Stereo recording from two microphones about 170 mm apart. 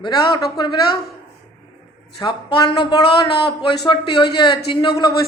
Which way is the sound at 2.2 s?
25° left (ahead or behind).